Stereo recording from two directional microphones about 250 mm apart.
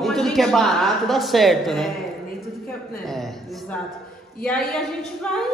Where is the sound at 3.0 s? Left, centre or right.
Centre.